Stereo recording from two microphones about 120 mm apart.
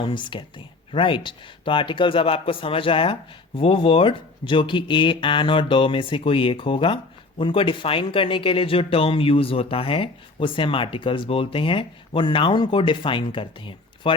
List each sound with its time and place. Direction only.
0.0 s speech: 40° left (ahead or behind)